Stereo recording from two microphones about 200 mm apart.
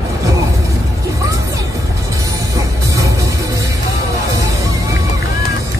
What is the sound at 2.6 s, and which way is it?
Music, 15° right (ahead or behind).